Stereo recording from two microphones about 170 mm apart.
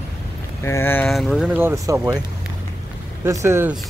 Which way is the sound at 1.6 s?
15° right (ahead or behind).